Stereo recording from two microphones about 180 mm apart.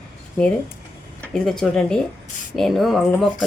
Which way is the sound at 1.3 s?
5° left (ahead or behind).